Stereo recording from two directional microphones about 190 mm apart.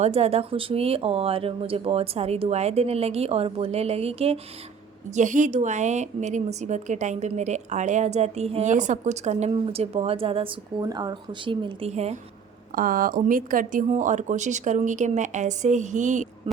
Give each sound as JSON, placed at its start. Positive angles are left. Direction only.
{"t": 0.0, "sound": "a woman's voice", "side_deg": -35}
{"t": 12.7, "sound": "a woman's voice", "side_deg": -45}